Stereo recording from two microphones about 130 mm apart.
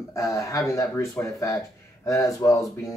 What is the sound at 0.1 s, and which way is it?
Speech, 25° left (ahead or behind).